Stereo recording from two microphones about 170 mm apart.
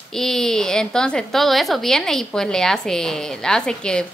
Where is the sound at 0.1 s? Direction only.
Centre (ahead or behind).